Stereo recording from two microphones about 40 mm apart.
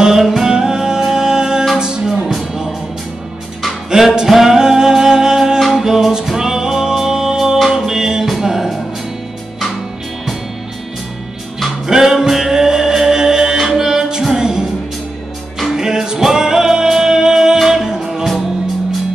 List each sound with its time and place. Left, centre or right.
0.0 s music: centre
3.9 s music: centre
11.9 s music: centre
15.7 s music: centre